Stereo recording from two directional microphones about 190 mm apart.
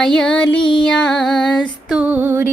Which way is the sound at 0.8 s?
5° left (ahead or behind).